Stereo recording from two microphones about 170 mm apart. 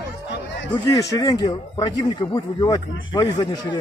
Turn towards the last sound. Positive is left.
turn(degrees=25)  # may be behind; listen again after turning